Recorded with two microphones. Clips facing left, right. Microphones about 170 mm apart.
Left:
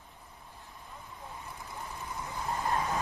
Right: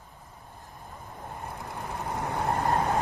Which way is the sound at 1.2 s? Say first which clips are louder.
Right 7 dB; 60° right (ahead or behind).